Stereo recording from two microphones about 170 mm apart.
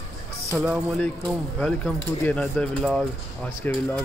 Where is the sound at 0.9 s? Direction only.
5° left (ahead or behind).